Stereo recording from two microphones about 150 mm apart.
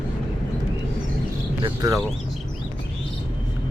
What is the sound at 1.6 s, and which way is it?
Speech, 25° right (ahead or behind).